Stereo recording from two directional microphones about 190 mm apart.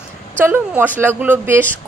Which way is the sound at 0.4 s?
10° right (ahead or behind).